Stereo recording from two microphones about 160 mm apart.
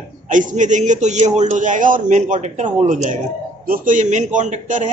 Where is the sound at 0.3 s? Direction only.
55° right (ahead or behind).